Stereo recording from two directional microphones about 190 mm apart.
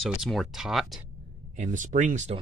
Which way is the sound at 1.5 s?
40° right (ahead or behind).